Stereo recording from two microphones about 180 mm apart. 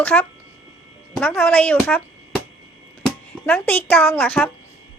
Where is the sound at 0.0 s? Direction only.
10° left (ahead or behind).